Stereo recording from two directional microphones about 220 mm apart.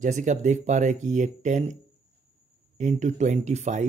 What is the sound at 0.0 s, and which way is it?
Speech, 35° right (ahead or behind).